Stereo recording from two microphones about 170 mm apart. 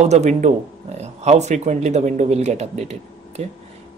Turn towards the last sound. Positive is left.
turn(degrees=-40)  # may be behind; listen again after turning